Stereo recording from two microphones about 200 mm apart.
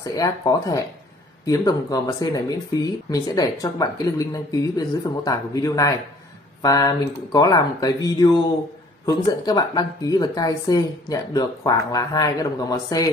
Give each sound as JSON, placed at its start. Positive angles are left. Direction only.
{"t": 0.0, "sound": "speech", "side_deg": 20}